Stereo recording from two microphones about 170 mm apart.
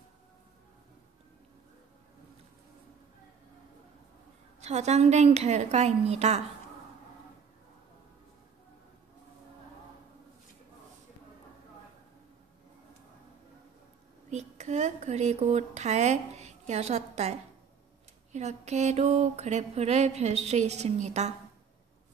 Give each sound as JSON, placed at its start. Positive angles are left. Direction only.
{"t": 4.6, "sound": "mantra", "side_deg": -40}
{"t": 14.3, "sound": "speech", "side_deg": -40}
{"t": 18.3, "sound": "mantra", "side_deg": -40}